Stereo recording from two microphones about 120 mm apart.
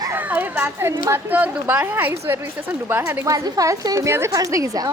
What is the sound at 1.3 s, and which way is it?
A woman's voice, 15° right (ahead or behind).